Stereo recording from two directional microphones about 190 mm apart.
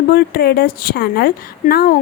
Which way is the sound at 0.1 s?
55° left (ahead or behind).